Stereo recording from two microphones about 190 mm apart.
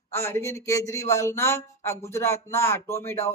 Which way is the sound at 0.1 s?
15° left (ahead or behind).